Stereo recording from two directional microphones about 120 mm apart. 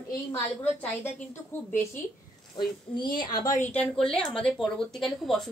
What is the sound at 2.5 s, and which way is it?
Speech, 40° left (ahead or behind).